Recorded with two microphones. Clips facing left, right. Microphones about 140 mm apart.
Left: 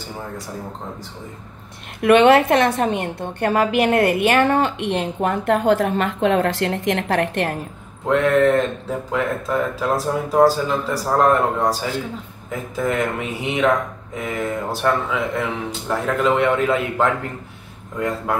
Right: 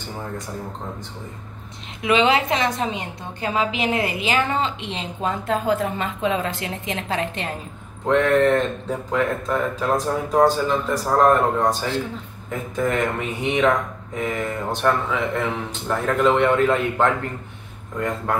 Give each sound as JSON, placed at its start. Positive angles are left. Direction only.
{"t": 2.0, "sound": "a woman's voice", "side_deg": 60}
{"t": 8.1, "sound": "speech", "side_deg": 0}